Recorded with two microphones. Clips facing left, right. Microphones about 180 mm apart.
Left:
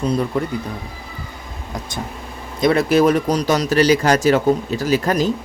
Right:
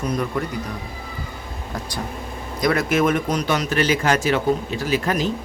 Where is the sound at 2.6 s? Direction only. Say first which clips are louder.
Left 5 dB; 30° left (ahead or behind).